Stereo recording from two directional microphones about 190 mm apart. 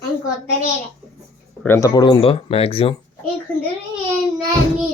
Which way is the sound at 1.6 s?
15° left (ahead or behind).